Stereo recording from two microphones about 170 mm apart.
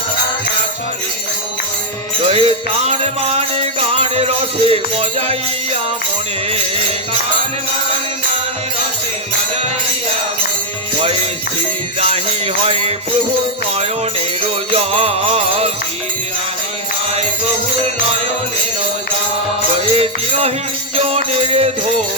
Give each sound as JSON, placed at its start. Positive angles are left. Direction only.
{"t": 2.2, "sound": "music", "side_deg": -35}
{"t": 12.6, "sound": "music", "side_deg": -35}
{"t": 14.7, "sound": "music", "side_deg": -35}
{"t": 19.9, "sound": "music", "side_deg": -35}